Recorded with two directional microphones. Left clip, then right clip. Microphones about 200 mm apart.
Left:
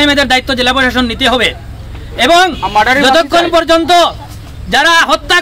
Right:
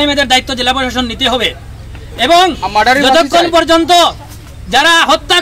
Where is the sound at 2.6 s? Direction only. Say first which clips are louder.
Even; 55° right (ahead or behind).